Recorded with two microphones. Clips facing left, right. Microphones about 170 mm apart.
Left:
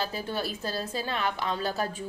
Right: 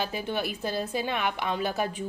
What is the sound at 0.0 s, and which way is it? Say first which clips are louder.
A woman's voice: right 1 dB; 15° right (ahead or behind).